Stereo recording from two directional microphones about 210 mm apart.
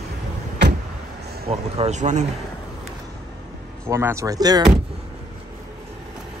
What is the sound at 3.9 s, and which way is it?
Speech, 10° right (ahead or behind).